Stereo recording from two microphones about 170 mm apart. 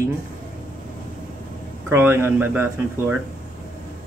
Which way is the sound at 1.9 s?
15° right (ahead or behind).